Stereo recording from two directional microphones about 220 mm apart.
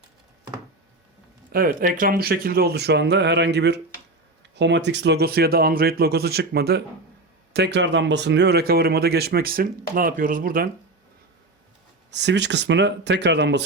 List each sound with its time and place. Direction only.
1.5 s speech: 40° right (ahead or behind)
12.1 s speech: 50° right (ahead or behind)